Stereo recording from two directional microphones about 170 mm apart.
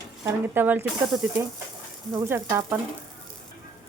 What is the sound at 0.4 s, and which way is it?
Speech, 10° right (ahead or behind).